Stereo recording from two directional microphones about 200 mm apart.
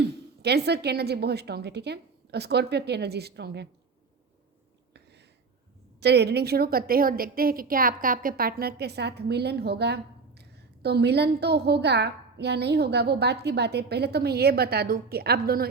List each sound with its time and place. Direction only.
0.4 s a woman's voice: 55° right (ahead or behind)
6.0 s a woman's voice: 55° right (ahead or behind)